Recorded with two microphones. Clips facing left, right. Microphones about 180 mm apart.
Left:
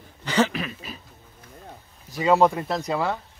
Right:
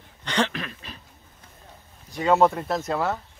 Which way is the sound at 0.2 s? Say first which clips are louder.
Left 3 dB; 5° left (ahead or behind).